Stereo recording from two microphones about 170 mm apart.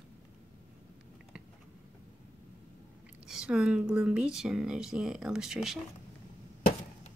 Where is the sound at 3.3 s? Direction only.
5° right (ahead or behind).